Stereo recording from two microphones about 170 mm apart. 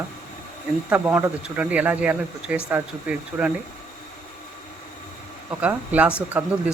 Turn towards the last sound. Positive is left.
turn(degrees=-10)  # may be behind; listen again after turning